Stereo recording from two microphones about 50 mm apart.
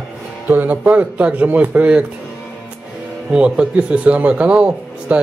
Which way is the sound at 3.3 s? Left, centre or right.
Right.